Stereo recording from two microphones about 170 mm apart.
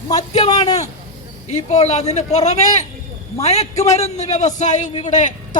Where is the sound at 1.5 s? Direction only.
40° left (ahead or behind).